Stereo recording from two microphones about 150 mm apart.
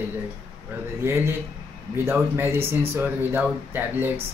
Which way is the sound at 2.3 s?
15° right (ahead or behind).